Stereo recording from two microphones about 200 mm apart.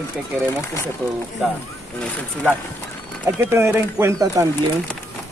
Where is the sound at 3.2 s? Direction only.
10° right (ahead or behind).